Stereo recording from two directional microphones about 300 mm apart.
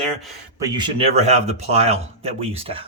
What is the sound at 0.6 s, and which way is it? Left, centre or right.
Speech, centre.